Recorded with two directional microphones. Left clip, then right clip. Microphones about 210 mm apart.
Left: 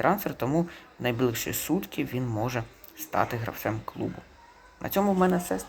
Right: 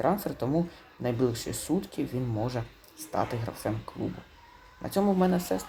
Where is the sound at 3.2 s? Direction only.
20° left (ahead or behind).